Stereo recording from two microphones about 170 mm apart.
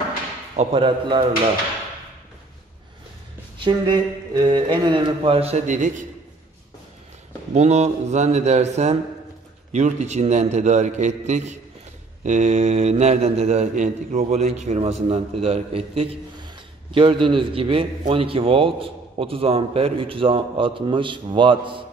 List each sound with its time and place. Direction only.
0.6 s a man's voice: 35° right (ahead or behind)
3.5 s a man's voice: 30° right (ahead or behind); by 6.0 s 45° right (ahead or behind)
7.5 s a man's voice: 40° right (ahead or behind)